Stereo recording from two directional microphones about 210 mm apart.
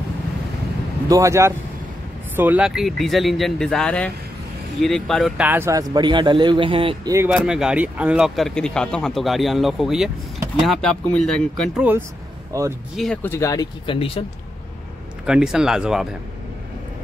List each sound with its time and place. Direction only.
1.0 s speech: 15° right (ahead or behind)
7.2 s speech: 5° right (ahead or behind)
12.5 s speech: 15° right (ahead or behind)
12.9 s speech: 5° left (ahead or behind); by 14.2 s 25° left (ahead or behind)
15.2 s speech: 5° right (ahead or behind)